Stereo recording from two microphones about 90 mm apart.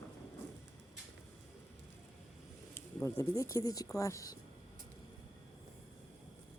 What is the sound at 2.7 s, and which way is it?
Speech, 30° left (ahead or behind).